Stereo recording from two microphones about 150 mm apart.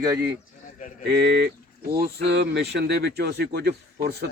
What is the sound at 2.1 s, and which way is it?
Speech, 90° right.